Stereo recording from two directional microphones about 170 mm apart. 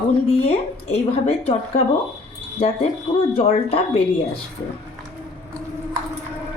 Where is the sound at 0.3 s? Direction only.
35° left (ahead or behind).